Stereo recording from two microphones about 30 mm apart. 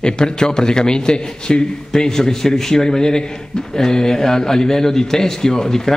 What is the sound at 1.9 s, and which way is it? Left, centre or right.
A man's voice, centre.